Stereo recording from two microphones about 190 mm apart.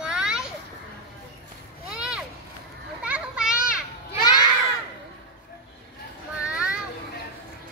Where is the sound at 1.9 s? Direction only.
5° right (ahead or behind).